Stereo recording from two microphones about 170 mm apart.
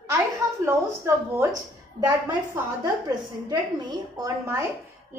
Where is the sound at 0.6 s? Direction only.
15° right (ahead or behind).